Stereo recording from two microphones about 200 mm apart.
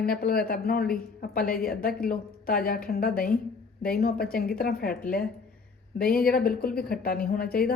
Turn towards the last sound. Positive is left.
turn(degrees=50)  # may be behind; listen again after turning